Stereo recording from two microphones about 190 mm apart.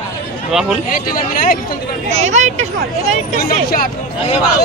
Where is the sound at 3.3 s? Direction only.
50° left (ahead or behind).